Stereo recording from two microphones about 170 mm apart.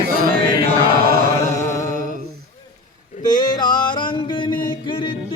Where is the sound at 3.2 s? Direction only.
25° left (ahead or behind).